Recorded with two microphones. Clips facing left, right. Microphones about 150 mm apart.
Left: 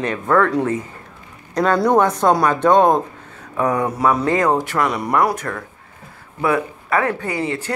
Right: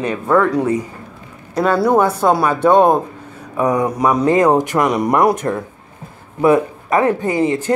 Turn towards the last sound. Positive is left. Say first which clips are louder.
# right 6 dB
turn(degrees=-20)  # may be behind; listen again after turning